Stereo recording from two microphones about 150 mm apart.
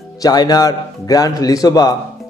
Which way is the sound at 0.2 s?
25° left (ahead or behind).